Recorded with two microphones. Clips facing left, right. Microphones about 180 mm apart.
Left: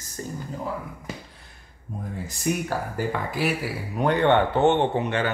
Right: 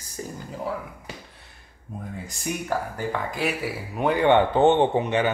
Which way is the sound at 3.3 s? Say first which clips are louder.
Left 1 dB; centre (ahead or behind).